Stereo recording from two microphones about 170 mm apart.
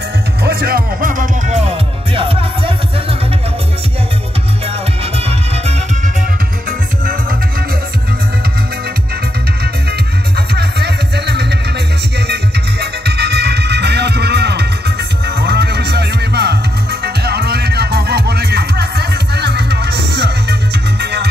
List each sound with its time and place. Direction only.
0.4 s music: 65° right (ahead or behind); by 3.2 s 30° right (ahead or behind)
10.5 s music: 75° right (ahead or behind)
12.8 s music: 75° right (ahead or behind)